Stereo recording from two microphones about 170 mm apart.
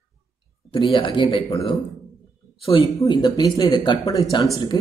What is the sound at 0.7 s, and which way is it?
Speech, 30° left (ahead or behind).